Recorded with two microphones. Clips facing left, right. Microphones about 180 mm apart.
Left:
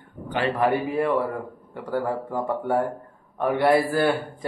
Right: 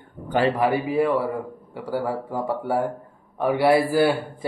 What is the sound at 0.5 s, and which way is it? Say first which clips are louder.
A man's voice: right 1 dB; 10° right (ahead or behind).